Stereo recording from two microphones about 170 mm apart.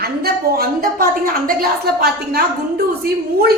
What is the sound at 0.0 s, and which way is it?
A woman's voice, 65° right (ahead or behind).